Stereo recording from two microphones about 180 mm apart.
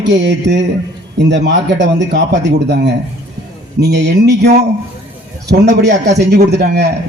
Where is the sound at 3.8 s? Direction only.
75° right (ahead or behind).